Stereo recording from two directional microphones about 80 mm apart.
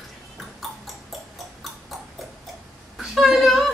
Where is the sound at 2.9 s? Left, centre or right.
Centre.